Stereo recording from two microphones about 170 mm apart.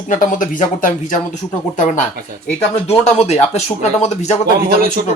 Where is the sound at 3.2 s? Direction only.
40° left (ahead or behind).